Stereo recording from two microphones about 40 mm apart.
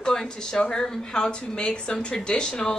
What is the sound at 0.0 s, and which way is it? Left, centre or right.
Speech, centre.